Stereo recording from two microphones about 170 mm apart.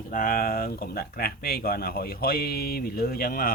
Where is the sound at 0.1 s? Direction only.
55° left (ahead or behind).